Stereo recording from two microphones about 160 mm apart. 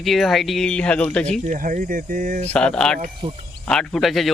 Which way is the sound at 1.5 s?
55° right (ahead or behind).